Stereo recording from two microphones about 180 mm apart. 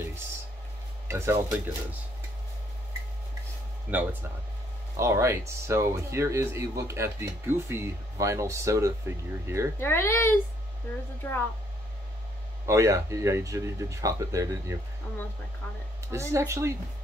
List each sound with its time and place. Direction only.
1.0 s speech: 15° right (ahead or behind)
3.9 s speech: 10° right (ahead or behind)
9.8 s speech: 15° left (ahead or behind)
12.6 s speech: 15° right (ahead or behind)
16.1 s speech: 15° right (ahead or behind)